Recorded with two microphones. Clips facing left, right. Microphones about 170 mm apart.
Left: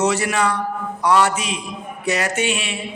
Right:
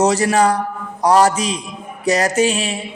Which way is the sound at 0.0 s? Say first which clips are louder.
Right 5 dB; 40° right (ahead or behind).